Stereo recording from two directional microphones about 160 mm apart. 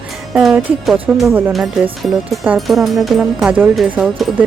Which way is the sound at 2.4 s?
Centre (ahead or behind).